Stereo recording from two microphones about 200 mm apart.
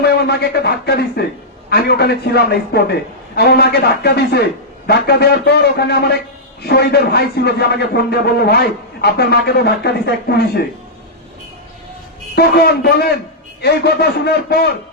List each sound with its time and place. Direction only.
0.0 s a man's voice: 55° left (ahead or behind)
12.4 s a man's voice: 50° left (ahead or behind)